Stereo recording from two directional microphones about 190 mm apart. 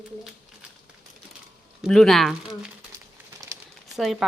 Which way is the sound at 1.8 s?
5° left (ahead or behind).